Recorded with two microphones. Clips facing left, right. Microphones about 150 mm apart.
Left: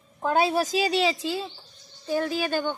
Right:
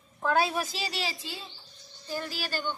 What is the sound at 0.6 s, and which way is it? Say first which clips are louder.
Speech: left 10 dB; 45° left (ahead or behind).